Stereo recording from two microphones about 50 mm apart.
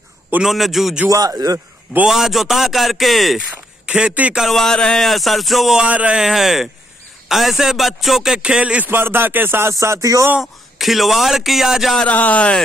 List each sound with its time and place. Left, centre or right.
0.4 s speech: centre
1.0 s a man's voice: right
2.0 s speech: centre
3.8 s a man's voice: right
4.5 s speech: centre
4.7 s speech: centre
5.0 s speech: centre
5.9 s speech: right
6.1 s speech: centre
8.4 s speech: centre
8.8 s speech: right
9.7 s a sound: right
10.4 s speech: centre
12.0 s speech: left